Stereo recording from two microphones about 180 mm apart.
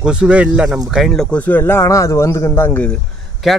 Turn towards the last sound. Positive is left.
turn(degrees=0)  # may be behind; listen again after turning